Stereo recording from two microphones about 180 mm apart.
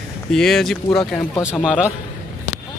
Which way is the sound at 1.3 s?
15° left (ahead or behind).